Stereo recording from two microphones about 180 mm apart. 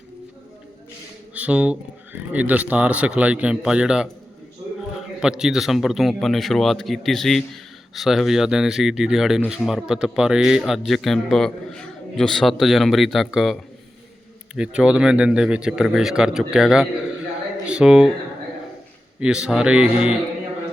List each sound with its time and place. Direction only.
1.3 s speech: 5° right (ahead or behind)
5.2 s a man's voice: 5° right (ahead or behind)
19.2 s a man's voice: 5° right (ahead or behind)